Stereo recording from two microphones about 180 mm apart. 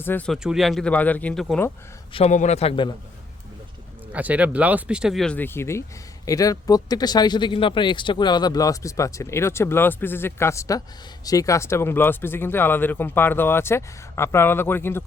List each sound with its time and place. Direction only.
0.0 s speech: 10° left (ahead or behind)
0.3 s speech: centre (ahead or behind)
2.1 s a man's voice: 40° left (ahead or behind)
4.1 s speech: 10° right (ahead or behind); by 15.0 s 10° left (ahead or behind)